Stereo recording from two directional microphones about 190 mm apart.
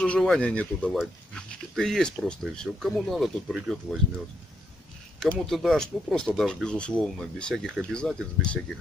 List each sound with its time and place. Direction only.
0.0 s speech: 5° left (ahead or behind)
5.2 s speech: centre (ahead or behind)